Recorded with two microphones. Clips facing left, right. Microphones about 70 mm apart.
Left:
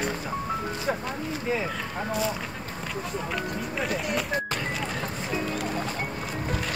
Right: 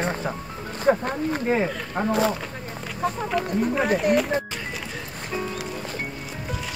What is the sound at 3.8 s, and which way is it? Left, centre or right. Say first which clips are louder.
Speech: right 8 dB; right.